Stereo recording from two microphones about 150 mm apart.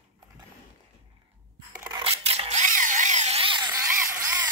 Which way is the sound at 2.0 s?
40° right (ahead or behind).